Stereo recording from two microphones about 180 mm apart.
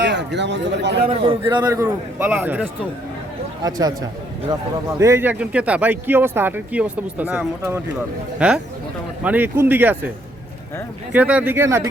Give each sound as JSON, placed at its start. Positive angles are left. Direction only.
{"t": 0.0, "sound": "a man's voice", "side_deg": -70}
{"t": 1.0, "sound": "speech", "side_deg": -30}
{"t": 4.9, "sound": "speech", "side_deg": -15}
{"t": 11.1, "sound": "speech", "side_deg": -10}